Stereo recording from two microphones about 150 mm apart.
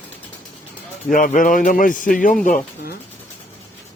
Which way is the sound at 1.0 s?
60° left (ahead or behind).